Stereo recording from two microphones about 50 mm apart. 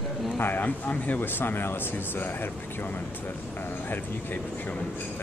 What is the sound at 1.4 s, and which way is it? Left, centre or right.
Speech, left.